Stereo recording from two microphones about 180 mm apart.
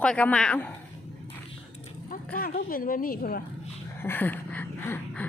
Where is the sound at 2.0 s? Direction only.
55° left (ahead or behind).